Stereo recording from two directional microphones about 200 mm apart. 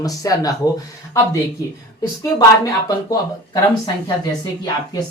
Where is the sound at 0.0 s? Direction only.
15° left (ahead or behind).